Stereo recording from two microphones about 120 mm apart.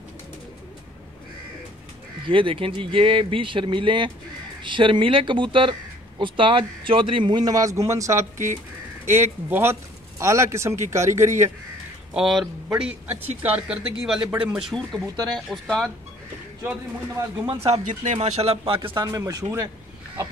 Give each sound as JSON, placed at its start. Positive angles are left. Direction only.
{"t": 2.2, "sound": "a man's voice", "side_deg": -45}
{"t": 12.1, "sound": "speech", "side_deg": -5}
{"t": 14.7, "sound": "speech", "side_deg": 5}
{"t": 17.5, "sound": "speech", "side_deg": -60}
{"t": 18.6, "sound": "speech", "side_deg": -40}